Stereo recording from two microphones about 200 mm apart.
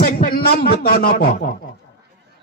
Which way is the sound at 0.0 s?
50° left (ahead or behind).